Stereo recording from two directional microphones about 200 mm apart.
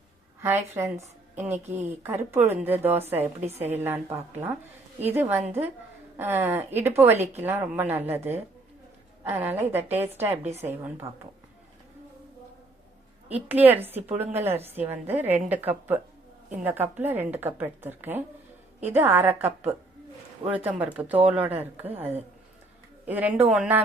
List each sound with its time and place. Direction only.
0.4 s a woman's voice: 10° right (ahead or behind)
13.2 s a woman's voice: 10° right (ahead or behind)
14.1 s speech: 30° right (ahead or behind)
14.3 s a woman's voice: 10° right (ahead or behind)